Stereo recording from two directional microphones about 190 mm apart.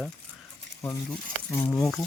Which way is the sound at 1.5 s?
15° left (ahead or behind).